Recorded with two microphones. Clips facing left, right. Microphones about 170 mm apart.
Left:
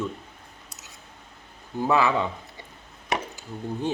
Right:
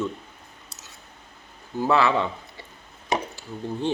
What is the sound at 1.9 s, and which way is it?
Speech, 15° left (ahead or behind).